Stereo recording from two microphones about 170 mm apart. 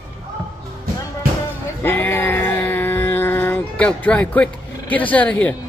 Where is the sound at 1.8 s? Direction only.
10° left (ahead or behind).